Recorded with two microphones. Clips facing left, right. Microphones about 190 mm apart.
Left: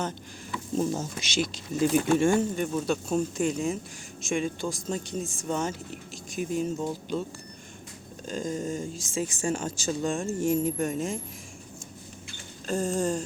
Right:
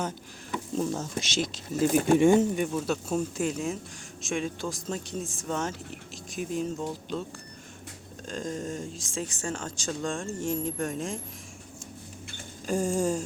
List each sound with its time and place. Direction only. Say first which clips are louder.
1.2 s speech: left 1 dB; centre (ahead or behind)
2.0 s speech: right 3 dB; 15° right (ahead or behind)
2.7 s speech: left 2 dB; 5° right (ahead or behind)
8.3 s speech: left 3 dB; centre (ahead or behind)
12.6 s speech: right 1 dB; 10° right (ahead or behind)